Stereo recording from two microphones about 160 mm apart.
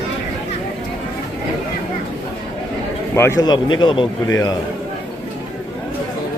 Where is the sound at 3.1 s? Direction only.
15° left (ahead or behind).